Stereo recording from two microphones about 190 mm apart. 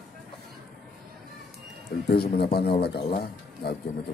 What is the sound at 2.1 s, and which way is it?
A man's voice, 55° left (ahead or behind).